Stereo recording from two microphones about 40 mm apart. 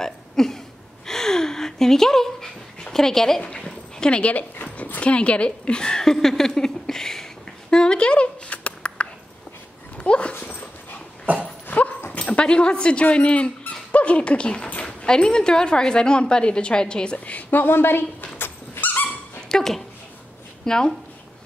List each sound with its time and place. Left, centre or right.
0.0 s throat clearing: centre
1.0 s dog: centre; by 4.5 s left
4.7 s dog: left
5.0 s a woman's voice: left
6.1 s a sound: centre; by 9.0 s left
9.9 s dog: left
11.7 s dog: left
12.1 s a woman's voice: left
17.3 s a woman's voice: left
18.4 s dog: left
19.5 s a sound: centre
20.6 s speech: centre